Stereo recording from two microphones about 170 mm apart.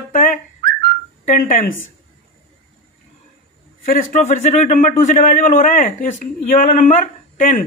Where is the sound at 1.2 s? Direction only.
55° left (ahead or behind).